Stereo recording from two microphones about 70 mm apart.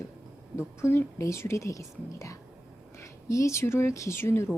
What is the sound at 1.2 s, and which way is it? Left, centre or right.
Speech, left.